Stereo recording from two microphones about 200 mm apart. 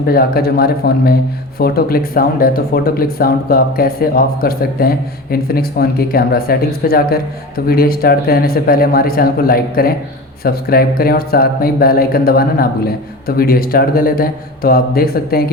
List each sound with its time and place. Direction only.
0.0 s speech: 50° left (ahead or behind)